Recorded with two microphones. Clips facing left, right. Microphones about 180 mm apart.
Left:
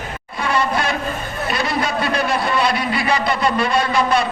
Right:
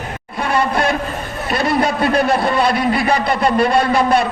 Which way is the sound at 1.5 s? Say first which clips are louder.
Right 5 dB; 50° right (ahead or behind).